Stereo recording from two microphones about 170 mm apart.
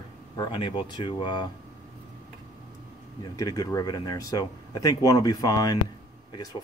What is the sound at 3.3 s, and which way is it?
Speech, 20° left (ahead or behind).